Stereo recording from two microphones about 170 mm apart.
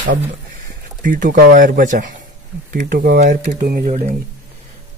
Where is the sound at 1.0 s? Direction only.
50° right (ahead or behind).